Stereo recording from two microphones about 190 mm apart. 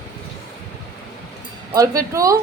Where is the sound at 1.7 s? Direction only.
20° right (ahead or behind).